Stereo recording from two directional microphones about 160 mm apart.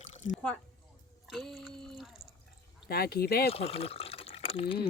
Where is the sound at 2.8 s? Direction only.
70° left (ahead or behind).